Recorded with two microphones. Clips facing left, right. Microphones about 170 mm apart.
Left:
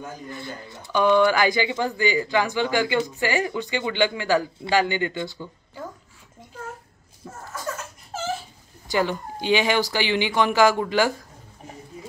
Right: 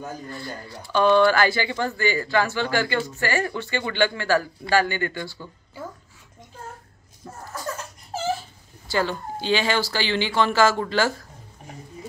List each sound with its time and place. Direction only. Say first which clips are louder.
0.3 s speech: right 1 dB; 20° left (ahead or behind)
8.8 s speech: left 1 dB; 15° left (ahead or behind)